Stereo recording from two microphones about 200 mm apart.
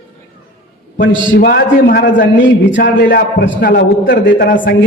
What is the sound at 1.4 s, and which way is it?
Speech, 50° left (ahead or behind).